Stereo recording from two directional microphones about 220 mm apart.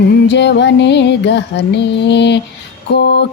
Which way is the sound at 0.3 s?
50° left (ahead or behind).